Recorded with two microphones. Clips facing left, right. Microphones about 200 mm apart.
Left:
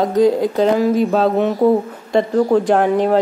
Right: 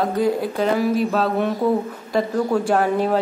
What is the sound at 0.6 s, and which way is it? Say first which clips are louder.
Speech: left 4 dB; 25° left (ahead or behind).